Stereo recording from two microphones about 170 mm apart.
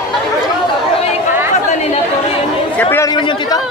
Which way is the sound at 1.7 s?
40° left (ahead or behind).